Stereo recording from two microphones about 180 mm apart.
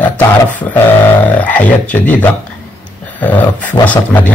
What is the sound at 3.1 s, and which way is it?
A man's voice, 10° left (ahead or behind).